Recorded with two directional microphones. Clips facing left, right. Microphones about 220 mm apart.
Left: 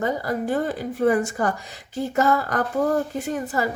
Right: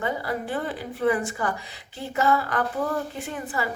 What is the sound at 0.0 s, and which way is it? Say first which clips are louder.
A woman's voice: left 4 dB; 45° left (ahead or behind).